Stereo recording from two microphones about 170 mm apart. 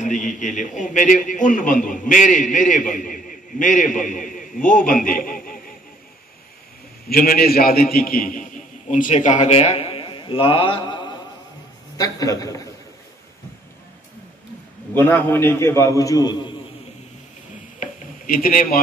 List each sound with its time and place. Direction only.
0.0 s a man's voice: 45° left (ahead or behind)
7.1 s a man's voice: 60° left (ahead or behind); by 12.6 s 20° left (ahead or behind)
15.0 s a man's voice: 10° left (ahead or behind)
17.7 s a sound: 50° left (ahead or behind)